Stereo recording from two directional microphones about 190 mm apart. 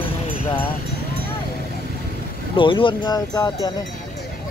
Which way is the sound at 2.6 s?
25° left (ahead or behind).